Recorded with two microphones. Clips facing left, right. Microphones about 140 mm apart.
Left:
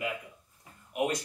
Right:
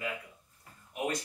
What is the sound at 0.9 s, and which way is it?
Speech, 15° left (ahead or behind).